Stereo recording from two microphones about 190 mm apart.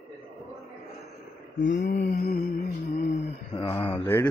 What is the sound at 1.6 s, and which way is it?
Speech, 65° left (ahead or behind).